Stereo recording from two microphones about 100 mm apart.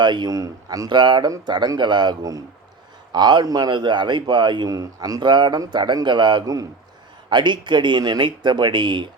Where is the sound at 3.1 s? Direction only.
50° right (ahead or behind).